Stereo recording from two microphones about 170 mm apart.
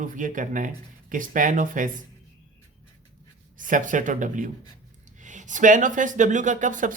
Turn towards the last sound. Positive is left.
turn(degrees=-50)  # may be behind; listen again after turning